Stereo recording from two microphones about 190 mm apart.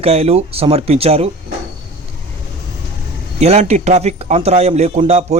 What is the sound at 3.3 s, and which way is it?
A man's voice, 35° right (ahead or behind).